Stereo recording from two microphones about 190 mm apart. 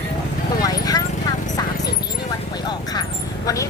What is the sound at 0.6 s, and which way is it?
Clip-clop, 20° left (ahead or behind).